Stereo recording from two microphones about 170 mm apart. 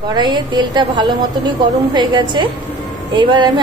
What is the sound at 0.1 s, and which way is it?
A woman's voice, 25° right (ahead or behind).